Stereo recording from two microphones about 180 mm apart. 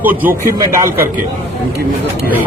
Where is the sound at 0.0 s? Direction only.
10° right (ahead or behind).